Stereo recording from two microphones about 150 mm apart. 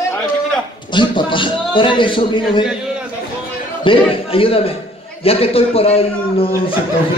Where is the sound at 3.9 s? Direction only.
40° left (ahead or behind).